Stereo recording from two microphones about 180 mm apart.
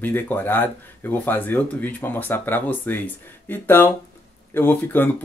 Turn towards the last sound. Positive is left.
turn(degrees=10)  # may be behind; listen again after turning